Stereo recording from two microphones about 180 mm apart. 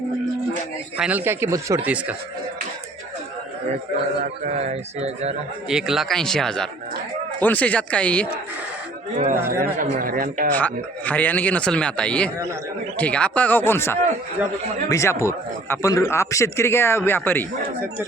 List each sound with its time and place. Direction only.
0.9 s speech: 5° right (ahead or behind)
4.4 s speech: 40° right (ahead or behind)
5.6 s a man's voice: 5° right (ahead or behind)
9.1 s speech: 45° right (ahead or behind)
10.5 s a man's voice: 10° left (ahead or behind)